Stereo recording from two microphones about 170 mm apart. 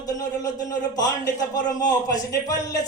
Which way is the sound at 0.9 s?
20° left (ahead or behind).